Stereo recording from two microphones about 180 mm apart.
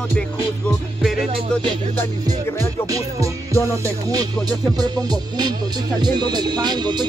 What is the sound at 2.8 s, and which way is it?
Speech, 20° right (ahead or behind).